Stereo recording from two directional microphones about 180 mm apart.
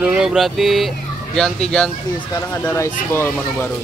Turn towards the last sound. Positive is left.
turn(degrees=10)  # may be behind; listen again after turning